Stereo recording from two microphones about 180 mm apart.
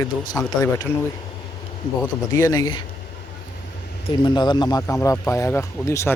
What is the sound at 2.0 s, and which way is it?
Speech, 15° left (ahead or behind).